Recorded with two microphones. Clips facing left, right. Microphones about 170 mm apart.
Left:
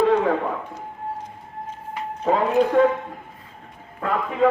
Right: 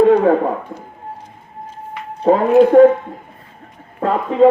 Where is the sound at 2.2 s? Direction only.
45° right (ahead or behind).